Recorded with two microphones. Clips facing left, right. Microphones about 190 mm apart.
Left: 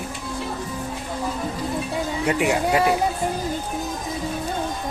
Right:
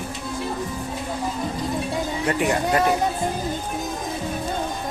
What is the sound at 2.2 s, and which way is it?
Speech, 10° left (ahead or behind).